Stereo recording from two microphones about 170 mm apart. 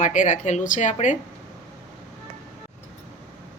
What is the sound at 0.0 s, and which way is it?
A woman's voice, 45° left (ahead or behind).